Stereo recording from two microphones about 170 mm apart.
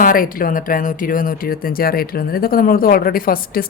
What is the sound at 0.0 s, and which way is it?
A woman's voice, 55° left (ahead or behind).